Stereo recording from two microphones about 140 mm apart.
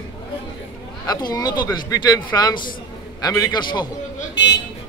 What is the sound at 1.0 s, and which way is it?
A man's voice, 30° left (ahead or behind).